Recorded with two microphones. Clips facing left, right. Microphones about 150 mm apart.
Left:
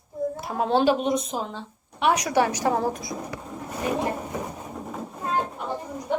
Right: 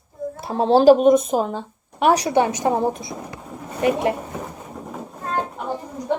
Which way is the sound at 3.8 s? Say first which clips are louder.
Right 8 dB; 75° right (ahead or behind).